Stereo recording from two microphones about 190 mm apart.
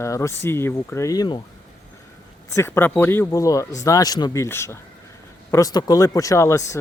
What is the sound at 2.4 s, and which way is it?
Speech, 15° left (ahead or behind).